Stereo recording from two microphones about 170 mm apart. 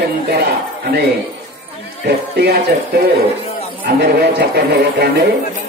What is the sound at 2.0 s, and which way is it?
Speech, 70° right (ahead or behind).